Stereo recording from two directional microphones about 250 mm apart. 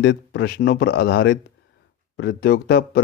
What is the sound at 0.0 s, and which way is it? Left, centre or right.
Speech, left.